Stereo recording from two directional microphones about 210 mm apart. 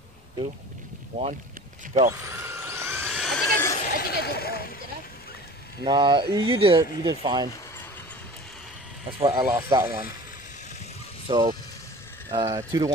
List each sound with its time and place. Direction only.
2.0 s vehicle: 15° right (ahead or behind)
3.7 s a sound: 45° left (ahead or behind)
5.9 s speech: 20° right (ahead or behind)
9.2 s speech: 20° right (ahead or behind)
11.2 s speech: 20° right (ahead or behind)